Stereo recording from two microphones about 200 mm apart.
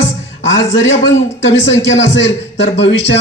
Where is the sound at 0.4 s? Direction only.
65° left (ahead or behind).